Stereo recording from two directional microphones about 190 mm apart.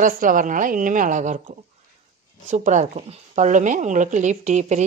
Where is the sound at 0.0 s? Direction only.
45° right (ahead or behind).